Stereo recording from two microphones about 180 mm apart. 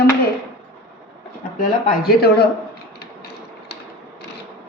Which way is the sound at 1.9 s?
55° left (ahead or behind).